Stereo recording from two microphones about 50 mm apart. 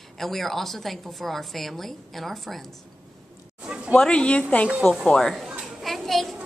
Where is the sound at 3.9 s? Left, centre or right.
Centre.